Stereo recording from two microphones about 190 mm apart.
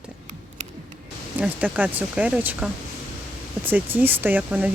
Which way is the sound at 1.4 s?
10° right (ahead or behind).